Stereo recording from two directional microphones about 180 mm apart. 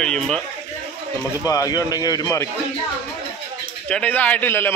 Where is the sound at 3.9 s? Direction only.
5° left (ahead or behind).